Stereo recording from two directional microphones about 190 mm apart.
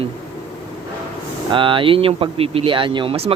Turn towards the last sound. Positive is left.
turn(degrees=-30)  # may be behind; listen again after turning